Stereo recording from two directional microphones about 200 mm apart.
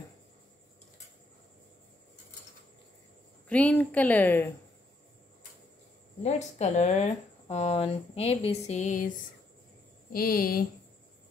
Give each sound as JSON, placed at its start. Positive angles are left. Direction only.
{"t": 3.4, "sound": "a woman's voice", "side_deg": 5}
{"t": 6.2, "sound": "speech", "side_deg": 35}
{"t": 10.1, "sound": "speech", "side_deg": 45}